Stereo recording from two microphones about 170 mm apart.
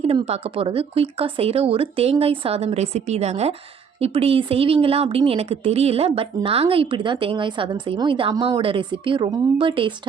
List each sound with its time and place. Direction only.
0.0 s speech: 35° right (ahead or behind)